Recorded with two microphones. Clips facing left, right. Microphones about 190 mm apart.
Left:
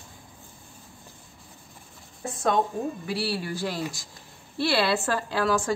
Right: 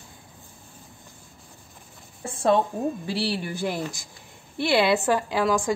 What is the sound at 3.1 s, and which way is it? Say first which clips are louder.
A woman's voice: right 1 dB; 25° right (ahead or behind).